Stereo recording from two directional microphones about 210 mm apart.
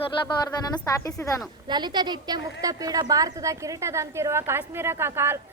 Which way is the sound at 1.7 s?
20° right (ahead or behind).